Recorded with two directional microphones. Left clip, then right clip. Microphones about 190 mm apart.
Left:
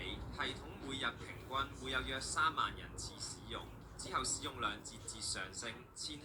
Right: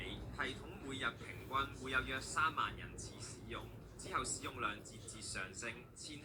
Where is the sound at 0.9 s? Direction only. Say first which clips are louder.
Left 1 dB; 20° left (ahead or behind).